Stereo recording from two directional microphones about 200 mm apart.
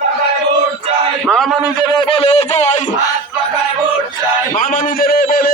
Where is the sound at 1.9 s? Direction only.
25° left (ahead or behind).